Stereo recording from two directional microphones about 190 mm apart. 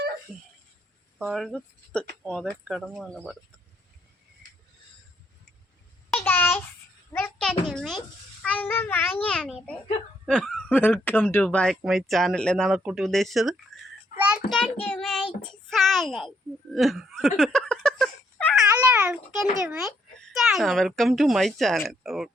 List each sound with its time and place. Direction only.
0.3 s speech: centre (ahead or behind)
6.1 s a sound: 10° left (ahead or behind)
7.7 s a child's voice: centre (ahead or behind)
14.1 s child singing: 45° left (ahead or behind)
14.5 s child singing: 5° left (ahead or behind)
16.7 s hiccup: centre (ahead or behind)
18.8 s a child's voice: 5° right (ahead or behind)